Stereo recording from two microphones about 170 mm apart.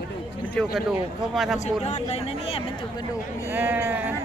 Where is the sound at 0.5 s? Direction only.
Centre (ahead or behind).